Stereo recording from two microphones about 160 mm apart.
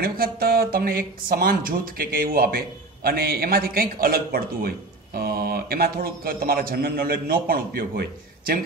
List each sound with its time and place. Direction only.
0.0 s speech: 70° right (ahead or behind)